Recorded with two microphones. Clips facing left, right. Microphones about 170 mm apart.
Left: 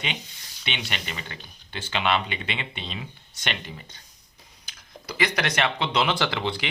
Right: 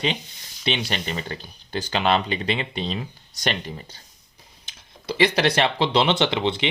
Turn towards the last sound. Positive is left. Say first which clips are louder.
# right 5 dB
turn(degrees=-20)  # may be behind; listen again after turning